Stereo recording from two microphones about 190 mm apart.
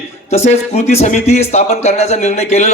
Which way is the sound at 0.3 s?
35° left (ahead or behind).